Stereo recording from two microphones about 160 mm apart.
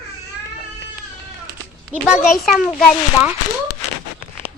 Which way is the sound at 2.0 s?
5° right (ahead or behind).